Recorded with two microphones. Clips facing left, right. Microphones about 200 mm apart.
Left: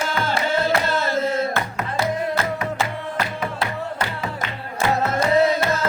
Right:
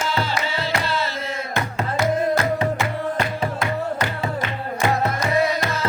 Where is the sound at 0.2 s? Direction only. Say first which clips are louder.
Left 3 dB; 50° left (ahead or behind).